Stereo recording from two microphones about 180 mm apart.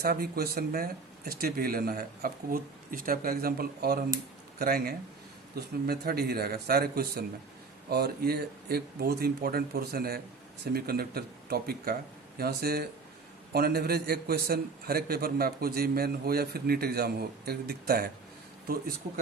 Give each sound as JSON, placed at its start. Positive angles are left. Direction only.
{"t": 0.0, "sound": "a man's voice", "side_deg": -60}